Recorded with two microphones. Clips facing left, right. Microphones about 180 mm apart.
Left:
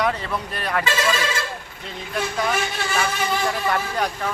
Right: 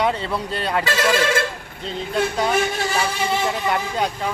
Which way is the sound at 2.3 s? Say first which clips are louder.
Right 4 dB; 30° right (ahead or behind).